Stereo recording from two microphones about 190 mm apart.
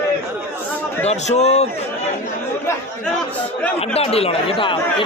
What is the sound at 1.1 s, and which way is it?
Speech, 35° left (ahead or behind).